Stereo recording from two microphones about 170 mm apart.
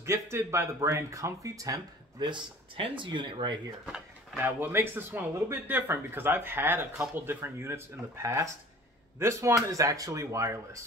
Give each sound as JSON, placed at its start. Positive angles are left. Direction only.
{"t": 0.0, "sound": "speech", "side_deg": -15}
{"t": 3.8, "sound": "a sound", "side_deg": -5}
{"t": 4.4, "sound": "speech", "side_deg": -15}